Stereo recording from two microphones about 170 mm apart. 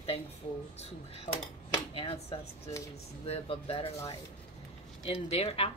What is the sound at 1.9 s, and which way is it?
Speech, 30° left (ahead or behind).